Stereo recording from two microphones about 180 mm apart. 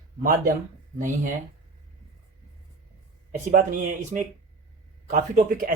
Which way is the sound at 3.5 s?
45° right (ahead or behind).